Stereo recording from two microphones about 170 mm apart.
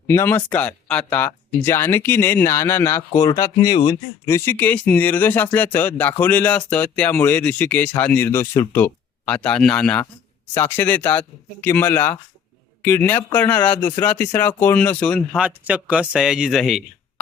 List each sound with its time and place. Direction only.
0.1 s speech: 15° left (ahead or behind)
4.3 s speech: 15° left (ahead or behind)
15.4 s speech: 10° right (ahead or behind)